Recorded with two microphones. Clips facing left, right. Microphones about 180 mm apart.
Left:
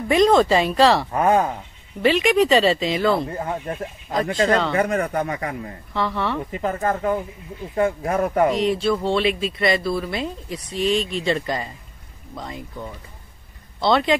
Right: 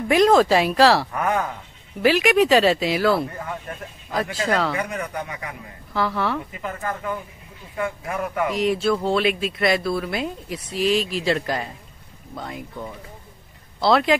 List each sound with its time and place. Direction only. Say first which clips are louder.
0.1 s speech: even; 5° right (ahead or behind)
1.1 s speech: left 5 dB; 25° left (ahead or behind)
2.0 s speech: even; 5° right (ahead or behind)
3.3 s speech: left 5 dB; 30° left (ahead or behind)
4.1 s speech: left 4 dB; 5° right (ahead or behind)
4.7 s a man's voice: left 7 dB; 45° left (ahead or behind)
5.9 s speech: even; centre (ahead or behind)
6.5 s speech: left 6 dB; 35° left (ahead or behind)
8.5 s speech: even; centre (ahead or behind)